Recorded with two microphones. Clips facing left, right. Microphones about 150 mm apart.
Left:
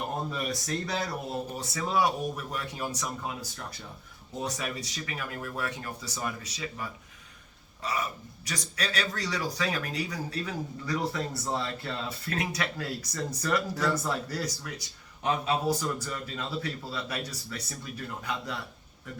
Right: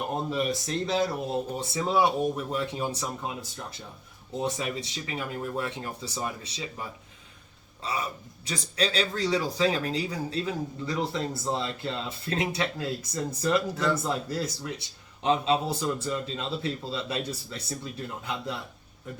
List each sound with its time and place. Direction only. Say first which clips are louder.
0.3 s speech: right 4 dB; 20° right (ahead or behind)
8.4 s speech: right 5 dB; 30° right (ahead or behind)